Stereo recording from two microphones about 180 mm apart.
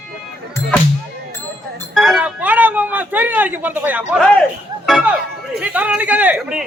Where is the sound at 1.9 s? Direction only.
5° right (ahead or behind).